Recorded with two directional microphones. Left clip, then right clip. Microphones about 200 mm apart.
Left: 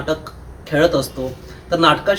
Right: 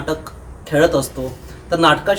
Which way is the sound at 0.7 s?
20° right (ahead or behind).